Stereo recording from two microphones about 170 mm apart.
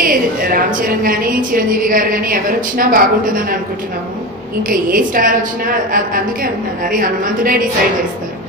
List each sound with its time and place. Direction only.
0.0 s a woman's voice: 55° right (ahead or behind)
4.6 s a woman's voice: 55° right (ahead or behind)